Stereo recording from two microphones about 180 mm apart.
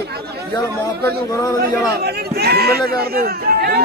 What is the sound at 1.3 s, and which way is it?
Speech, 20° left (ahead or behind).